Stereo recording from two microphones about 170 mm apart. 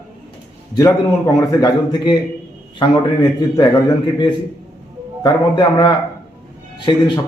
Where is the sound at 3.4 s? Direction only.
25° left (ahead or behind).